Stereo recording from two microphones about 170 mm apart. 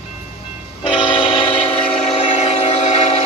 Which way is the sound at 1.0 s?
30° left (ahead or behind).